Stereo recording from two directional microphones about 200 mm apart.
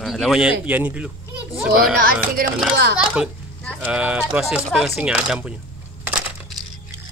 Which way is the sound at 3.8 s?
5° right (ahead or behind).